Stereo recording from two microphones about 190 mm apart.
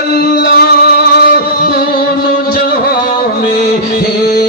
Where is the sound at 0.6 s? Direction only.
55° left (ahead or behind).